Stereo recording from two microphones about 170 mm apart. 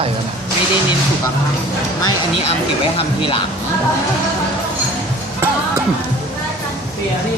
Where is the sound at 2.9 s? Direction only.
30° left (ahead or behind).